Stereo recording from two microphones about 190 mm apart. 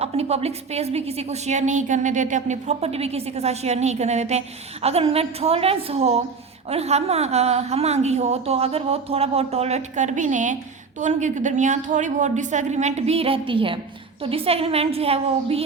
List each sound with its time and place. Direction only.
0.0 s a woman's voice: 35° right (ahead or behind)